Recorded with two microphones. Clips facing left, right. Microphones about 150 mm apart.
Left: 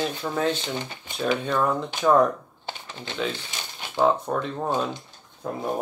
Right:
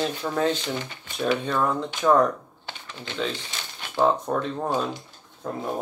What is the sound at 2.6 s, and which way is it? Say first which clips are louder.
Typing: left 3 dB; 25° left (ahead or behind).